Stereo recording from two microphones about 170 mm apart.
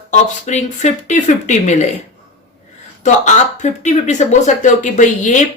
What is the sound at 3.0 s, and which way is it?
Speech, 45° left (ahead or behind).